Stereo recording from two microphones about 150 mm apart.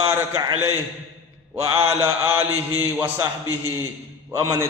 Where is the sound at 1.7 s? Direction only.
20° right (ahead or behind).